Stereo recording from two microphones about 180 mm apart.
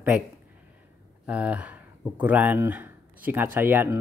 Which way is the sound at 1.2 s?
5° right (ahead or behind).